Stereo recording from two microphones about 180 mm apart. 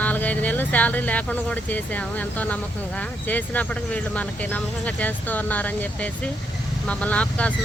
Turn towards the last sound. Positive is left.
turn(degrees=5)  # may be behind; listen again after turning